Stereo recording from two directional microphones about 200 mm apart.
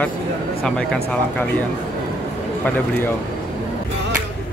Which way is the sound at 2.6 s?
10° left (ahead or behind).